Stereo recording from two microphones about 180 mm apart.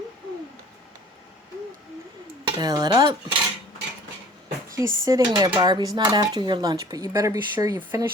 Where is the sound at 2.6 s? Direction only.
25° right (ahead or behind).